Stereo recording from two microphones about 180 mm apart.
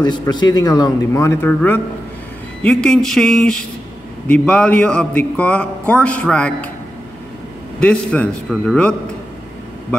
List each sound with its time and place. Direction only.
0.0 s a man's voice: 25° left (ahead or behind); by 6.7 s 5° left (ahead or behind)
7.8 s a man's voice: 5° left (ahead or behind)